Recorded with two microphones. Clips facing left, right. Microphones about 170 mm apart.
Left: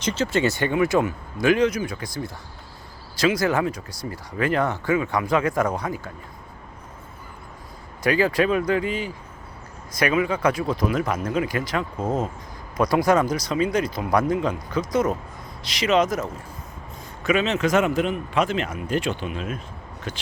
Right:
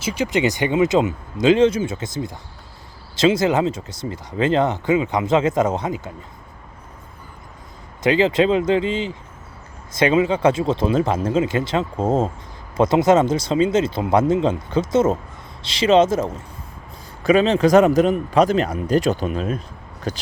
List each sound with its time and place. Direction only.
0.0 s speech: 10° right (ahead or behind)
8.0 s speech: 20° right (ahead or behind)
17.2 s speech: 35° right (ahead or behind)